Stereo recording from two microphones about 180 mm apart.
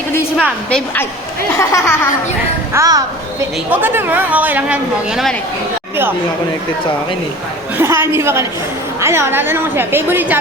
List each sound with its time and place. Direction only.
0.3 s a woman's voice: centre (ahead or behind)
1.5 s speech: 15° left (ahead or behind)
2.7 s a woman's voice: 20° right (ahead or behind); by 5.4 s centre (ahead or behind)
7.8 s speech: 15° right (ahead or behind)